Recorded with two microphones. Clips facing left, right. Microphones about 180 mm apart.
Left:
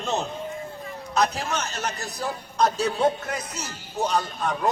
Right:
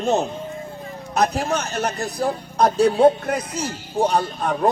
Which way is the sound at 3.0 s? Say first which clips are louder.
Right 8 dB; 30° right (ahead or behind).